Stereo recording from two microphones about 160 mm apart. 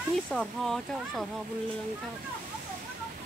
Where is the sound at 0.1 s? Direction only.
Centre (ahead or behind).